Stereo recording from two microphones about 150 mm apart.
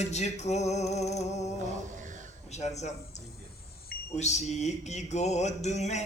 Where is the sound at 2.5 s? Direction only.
50° left (ahead or behind).